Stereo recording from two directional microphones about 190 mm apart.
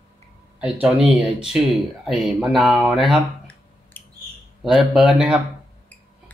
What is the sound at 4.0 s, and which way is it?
Bird, 10° left (ahead or behind).